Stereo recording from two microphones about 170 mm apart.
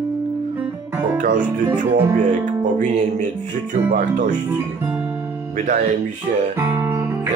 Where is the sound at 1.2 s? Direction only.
50° right (ahead or behind).